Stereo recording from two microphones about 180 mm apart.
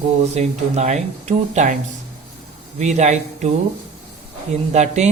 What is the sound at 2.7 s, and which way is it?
Speech, 40° right (ahead or behind).